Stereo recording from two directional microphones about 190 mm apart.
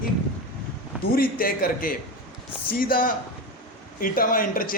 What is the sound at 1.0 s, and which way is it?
Speech, 50° left (ahead or behind).